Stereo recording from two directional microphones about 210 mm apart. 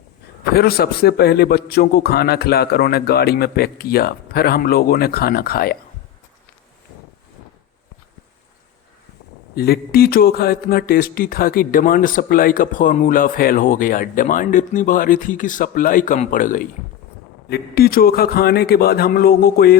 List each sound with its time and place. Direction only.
0.5 s a man's voice: 45° left (ahead or behind)
9.6 s a man's voice: 45° left (ahead or behind)